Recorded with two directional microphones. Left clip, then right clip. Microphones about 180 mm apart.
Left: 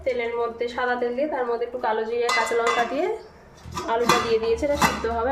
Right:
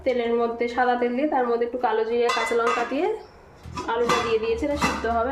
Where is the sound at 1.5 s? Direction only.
35° right (ahead or behind).